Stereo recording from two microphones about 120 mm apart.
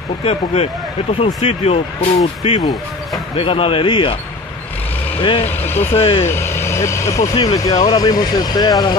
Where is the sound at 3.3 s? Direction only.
50° left (ahead or behind).